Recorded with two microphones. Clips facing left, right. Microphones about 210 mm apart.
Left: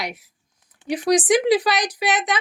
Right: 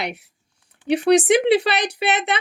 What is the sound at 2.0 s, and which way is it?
Speech, 60° right (ahead or behind).